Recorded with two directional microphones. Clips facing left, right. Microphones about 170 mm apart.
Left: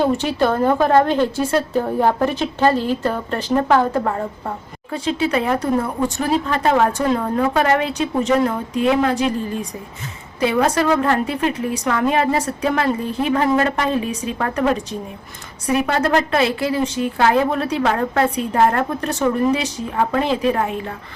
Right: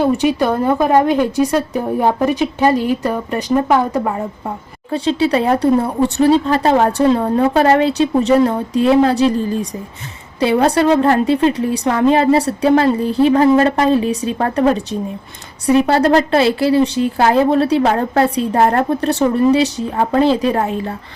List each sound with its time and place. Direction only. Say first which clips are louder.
0.0 s a woman's voice: right 3 dB; 10° right (ahead or behind)
4.9 s a woman's voice: right 5 dB; 30° right (ahead or behind)